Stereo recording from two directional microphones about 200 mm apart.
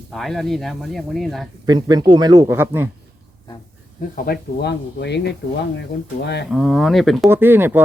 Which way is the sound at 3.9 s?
45° left (ahead or behind).